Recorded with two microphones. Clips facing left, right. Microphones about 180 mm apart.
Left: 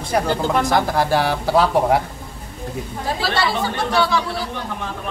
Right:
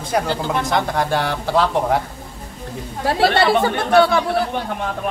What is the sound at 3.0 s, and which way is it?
Speech, 60° right (ahead or behind).